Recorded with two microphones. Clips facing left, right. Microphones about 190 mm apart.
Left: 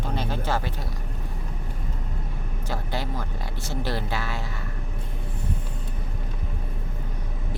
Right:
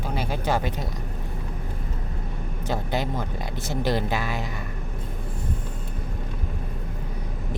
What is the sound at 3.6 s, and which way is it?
Speech, 15° right (ahead or behind).